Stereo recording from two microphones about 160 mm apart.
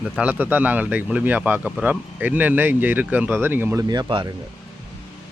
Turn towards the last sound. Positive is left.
turn(degrees=-30)  # may be behind; listen again after turning